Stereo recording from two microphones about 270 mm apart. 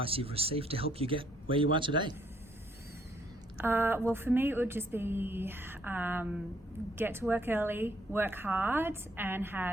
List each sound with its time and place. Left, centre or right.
0.0 s speech: right
3.6 s a woman's voice: centre